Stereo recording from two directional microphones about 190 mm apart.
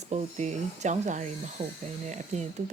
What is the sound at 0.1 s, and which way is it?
A woman's voice, 35° right (ahead or behind).